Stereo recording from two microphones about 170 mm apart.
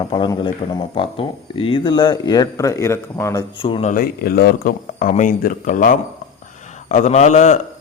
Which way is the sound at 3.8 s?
55° left (ahead or behind).